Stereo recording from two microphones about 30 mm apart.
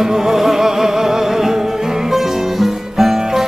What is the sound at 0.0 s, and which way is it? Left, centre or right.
Music, centre.